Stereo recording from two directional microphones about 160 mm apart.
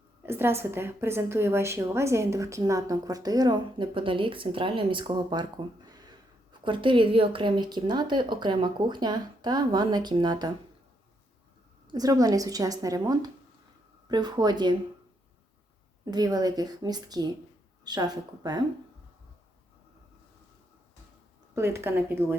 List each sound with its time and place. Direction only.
0.2 s a woman's voice: 15° right (ahead or behind)
11.9 s a woman's voice: 25° right (ahead or behind)
16.0 s a woman's voice: 25° right (ahead or behind)
21.5 s speech: 15° right (ahead or behind)